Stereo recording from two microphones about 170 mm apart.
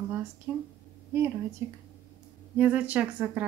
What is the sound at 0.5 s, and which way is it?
Speech, 10° right (ahead or behind).